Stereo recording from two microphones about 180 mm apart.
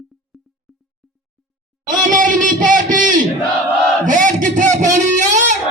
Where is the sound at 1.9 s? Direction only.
45° right (ahead or behind).